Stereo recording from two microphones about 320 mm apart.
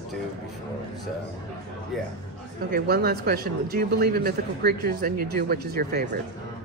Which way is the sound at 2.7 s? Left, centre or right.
Right.